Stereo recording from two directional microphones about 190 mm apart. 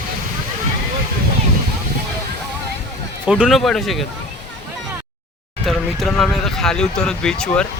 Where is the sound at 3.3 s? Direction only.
5° right (ahead or behind).